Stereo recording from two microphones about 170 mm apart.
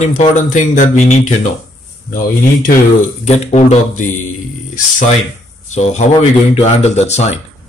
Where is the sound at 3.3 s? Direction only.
40° left (ahead or behind).